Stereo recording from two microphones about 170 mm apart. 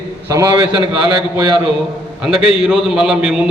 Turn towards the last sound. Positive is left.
turn(degrees=-5)  # may be behind; listen again after turning